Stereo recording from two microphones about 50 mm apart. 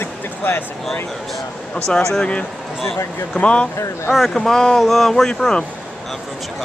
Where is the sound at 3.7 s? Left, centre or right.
Left.